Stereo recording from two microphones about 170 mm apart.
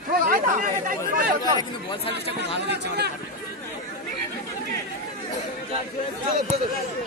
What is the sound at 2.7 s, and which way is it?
Speech, 75° right (ahead or behind).